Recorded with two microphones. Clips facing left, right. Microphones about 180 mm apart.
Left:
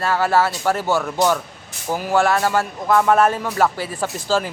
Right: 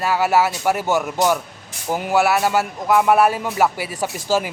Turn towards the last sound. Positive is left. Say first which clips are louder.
# even
turn(degrees=-15)  # may be behind; listen again after turning